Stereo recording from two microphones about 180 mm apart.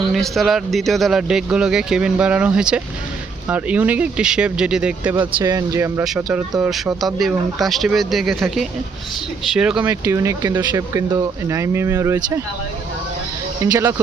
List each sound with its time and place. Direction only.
0.1 s a man's voice: centre (ahead or behind)
5.2 s speech: 20° right (ahead or behind)
6.0 s a man's voice: 5° right (ahead or behind)
9.9 s speech: 15° right (ahead or behind)
13.7 s speech: 15° right (ahead or behind)